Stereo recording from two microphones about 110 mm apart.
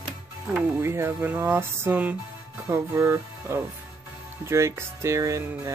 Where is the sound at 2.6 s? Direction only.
25° right (ahead or behind).